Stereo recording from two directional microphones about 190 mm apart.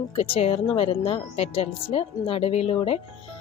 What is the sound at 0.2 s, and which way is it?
A woman's voice, 30° left (ahead or behind).